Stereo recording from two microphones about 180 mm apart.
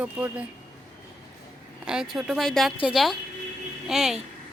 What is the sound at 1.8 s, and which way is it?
Speech, 5° right (ahead or behind).